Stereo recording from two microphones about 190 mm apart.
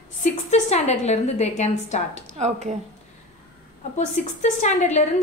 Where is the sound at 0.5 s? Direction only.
35° left (ahead or behind).